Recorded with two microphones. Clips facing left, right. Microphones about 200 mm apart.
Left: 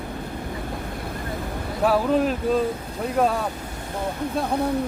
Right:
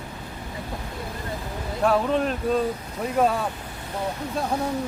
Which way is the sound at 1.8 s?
5° left (ahead or behind).